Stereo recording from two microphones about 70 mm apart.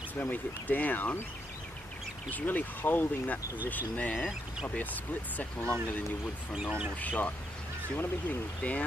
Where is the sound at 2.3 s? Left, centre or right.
Left.